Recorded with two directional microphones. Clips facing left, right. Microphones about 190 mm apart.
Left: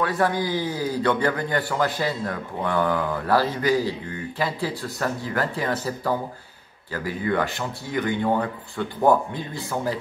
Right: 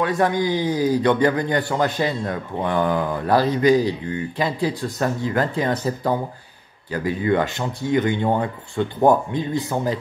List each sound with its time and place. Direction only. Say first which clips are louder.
0.2 s a man's voice: right 3 dB; 20° right (ahead or behind)